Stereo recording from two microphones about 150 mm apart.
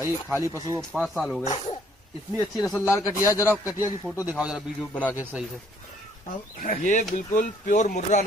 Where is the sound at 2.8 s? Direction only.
20° left (ahead or behind).